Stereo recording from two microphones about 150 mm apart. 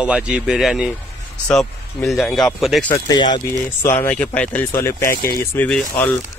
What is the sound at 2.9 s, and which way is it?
Speech, 30° left (ahead or behind).